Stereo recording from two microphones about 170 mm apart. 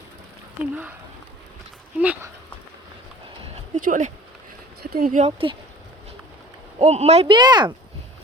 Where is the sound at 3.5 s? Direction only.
50° right (ahead or behind).